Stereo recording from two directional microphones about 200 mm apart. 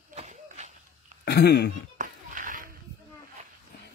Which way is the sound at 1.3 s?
55° left (ahead or behind).